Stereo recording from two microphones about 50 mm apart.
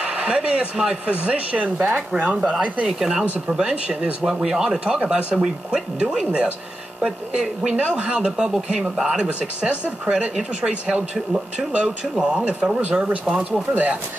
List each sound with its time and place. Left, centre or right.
0.0 s speech: right
3.0 s speech: centre
3.7 s speech: right
4.0 s speech: centre; by 13.9 s right